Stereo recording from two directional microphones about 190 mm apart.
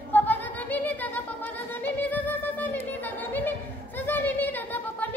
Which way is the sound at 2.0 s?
10° left (ahead or behind).